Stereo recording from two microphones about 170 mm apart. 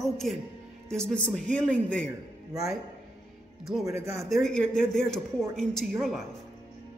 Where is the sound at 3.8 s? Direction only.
15° right (ahead or behind).